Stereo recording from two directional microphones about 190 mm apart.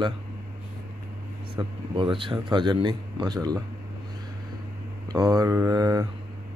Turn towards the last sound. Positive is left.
turn(degrees=-20)  # may be behind; listen again after turning